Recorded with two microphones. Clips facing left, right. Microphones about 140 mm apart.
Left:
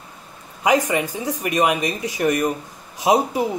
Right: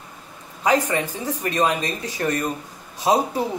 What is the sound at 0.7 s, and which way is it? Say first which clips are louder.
Speech: left 2 dB; 15° left (ahead or behind).